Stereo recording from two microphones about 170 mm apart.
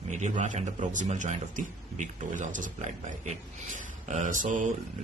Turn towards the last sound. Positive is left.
turn(degrees=-50)  # may be behind; listen again after turning